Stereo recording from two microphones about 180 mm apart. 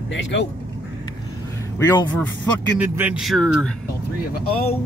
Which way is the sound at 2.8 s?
10° right (ahead or behind).